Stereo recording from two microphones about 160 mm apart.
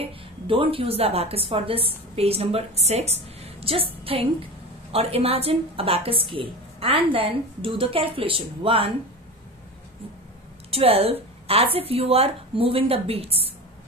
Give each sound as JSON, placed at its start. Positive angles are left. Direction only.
{"t": 0.0, "sound": "a woman's voice", "side_deg": -35}
{"t": 10.7, "sound": "a woman's voice", "side_deg": -35}